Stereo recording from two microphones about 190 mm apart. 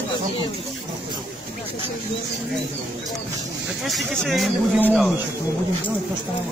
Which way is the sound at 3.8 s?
Centre (ahead or behind).